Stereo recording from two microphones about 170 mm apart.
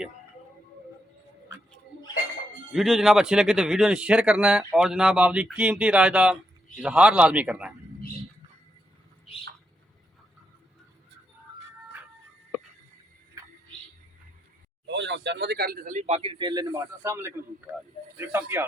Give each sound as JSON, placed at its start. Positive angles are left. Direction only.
{"t": 2.7, "sound": "a man's voice", "side_deg": 0}
{"t": 9.3, "sound": "bird", "side_deg": 35}
{"t": 13.4, "sound": "music", "side_deg": -20}
{"t": 14.8, "sound": "a man's voice", "side_deg": -90}